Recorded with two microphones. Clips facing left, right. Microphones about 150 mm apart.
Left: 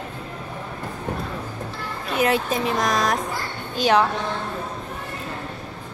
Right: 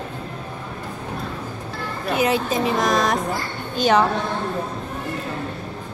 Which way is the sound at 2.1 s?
Centre (ahead or behind).